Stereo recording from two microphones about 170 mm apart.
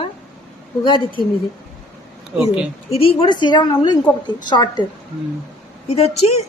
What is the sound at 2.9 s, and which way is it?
A woman's voice, 35° left (ahead or behind).